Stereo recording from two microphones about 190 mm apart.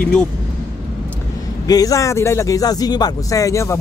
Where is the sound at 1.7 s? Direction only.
20° left (ahead or behind).